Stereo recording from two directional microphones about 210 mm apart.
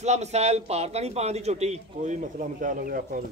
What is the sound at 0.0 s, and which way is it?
Speech, 30° right (ahead or behind).